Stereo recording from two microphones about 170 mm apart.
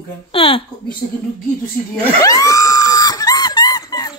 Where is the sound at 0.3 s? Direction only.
30° left (ahead or behind).